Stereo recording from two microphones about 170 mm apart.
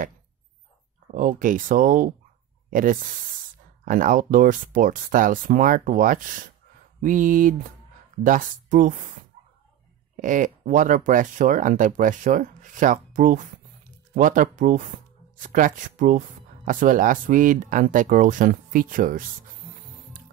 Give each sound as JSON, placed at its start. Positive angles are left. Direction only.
{"t": 1.1, "sound": "speech", "side_deg": -50}
{"t": 10.2, "sound": "speech", "side_deg": -50}